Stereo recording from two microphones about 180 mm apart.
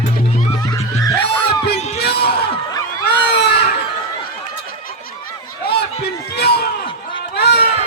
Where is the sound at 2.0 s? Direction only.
65° left (ahead or behind).